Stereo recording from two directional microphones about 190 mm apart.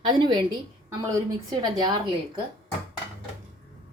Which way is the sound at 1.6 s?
20° right (ahead or behind).